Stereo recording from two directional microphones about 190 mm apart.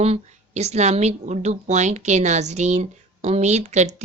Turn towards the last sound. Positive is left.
turn(degrees=-35)  # may be behind; listen again after turning